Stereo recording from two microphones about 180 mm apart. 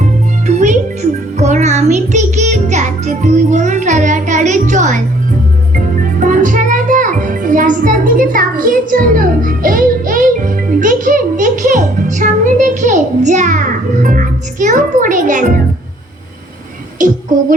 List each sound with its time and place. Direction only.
0.0 s music: 40° right (ahead or behind)
17.0 s child singing: 45° right (ahead or behind)